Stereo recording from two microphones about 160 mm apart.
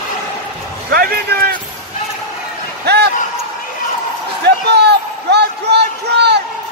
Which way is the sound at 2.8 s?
90° right.